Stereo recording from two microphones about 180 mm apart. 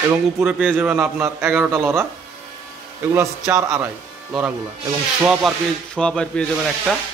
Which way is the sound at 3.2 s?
15° right (ahead or behind).